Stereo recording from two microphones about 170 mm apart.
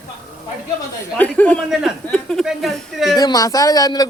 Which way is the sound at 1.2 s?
10° left (ahead or behind).